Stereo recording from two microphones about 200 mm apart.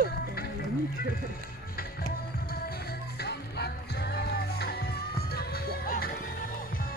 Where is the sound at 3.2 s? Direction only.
55° left (ahead or behind).